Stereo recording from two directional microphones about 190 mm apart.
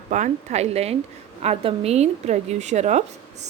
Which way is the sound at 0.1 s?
35° right (ahead or behind).